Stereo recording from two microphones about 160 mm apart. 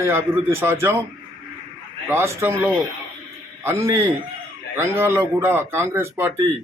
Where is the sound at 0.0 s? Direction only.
15° right (ahead or behind).